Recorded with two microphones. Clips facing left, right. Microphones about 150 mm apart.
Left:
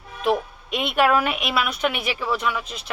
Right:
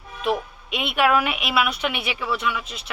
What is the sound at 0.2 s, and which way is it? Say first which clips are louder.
A woman's voice: left 2 dB; 40° left (ahead or behind).